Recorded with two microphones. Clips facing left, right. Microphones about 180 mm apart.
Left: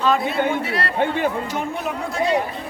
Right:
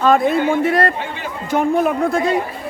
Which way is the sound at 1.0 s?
55° left (ahead or behind).